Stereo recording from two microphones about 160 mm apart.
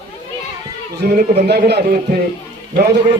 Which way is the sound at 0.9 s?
80° right.